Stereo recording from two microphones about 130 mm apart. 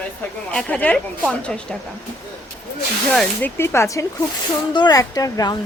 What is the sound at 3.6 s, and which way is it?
Speech, 20° left (ahead or behind).